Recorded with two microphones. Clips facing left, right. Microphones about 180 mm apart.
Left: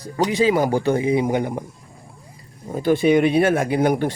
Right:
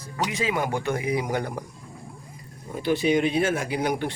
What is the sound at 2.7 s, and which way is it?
Speech, 45° left (ahead or behind).